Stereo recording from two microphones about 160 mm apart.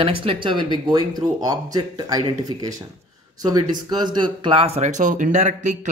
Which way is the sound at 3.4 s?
25° right (ahead or behind).